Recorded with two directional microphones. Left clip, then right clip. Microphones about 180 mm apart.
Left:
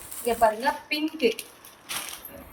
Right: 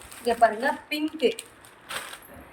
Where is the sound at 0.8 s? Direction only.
40° right (ahead or behind).